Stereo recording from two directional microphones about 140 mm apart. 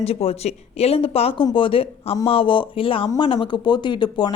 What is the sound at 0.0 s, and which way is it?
Speech, 45° left (ahead or behind).